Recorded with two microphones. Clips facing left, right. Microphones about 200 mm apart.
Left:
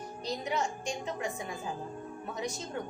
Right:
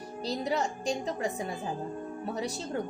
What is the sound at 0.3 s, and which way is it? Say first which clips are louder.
A woman's voice: right 3 dB; 35° right (ahead or behind).